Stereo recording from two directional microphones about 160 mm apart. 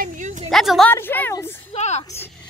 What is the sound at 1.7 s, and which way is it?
Speech, 45° left (ahead or behind).